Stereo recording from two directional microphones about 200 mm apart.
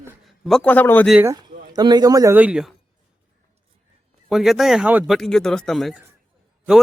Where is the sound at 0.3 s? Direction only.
Centre (ahead or behind).